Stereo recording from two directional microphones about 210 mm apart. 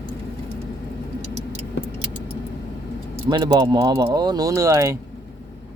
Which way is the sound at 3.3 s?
20° right (ahead or behind).